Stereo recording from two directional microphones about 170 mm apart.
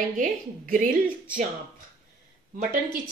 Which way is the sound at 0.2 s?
55° right (ahead or behind).